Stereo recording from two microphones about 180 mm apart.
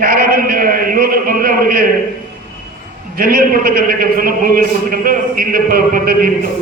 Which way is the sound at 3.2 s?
50° right (ahead or behind).